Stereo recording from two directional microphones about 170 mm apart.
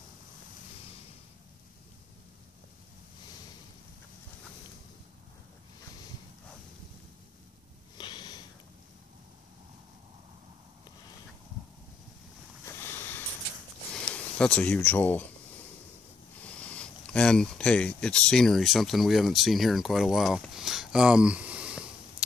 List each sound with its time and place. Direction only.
8.0 s sniff: 25° left (ahead or behind)
12.6 s a sound: 10° left (ahead or behind)
13.9 s speech: 5° left (ahead or behind)
16.4 s speech: 10° left (ahead or behind)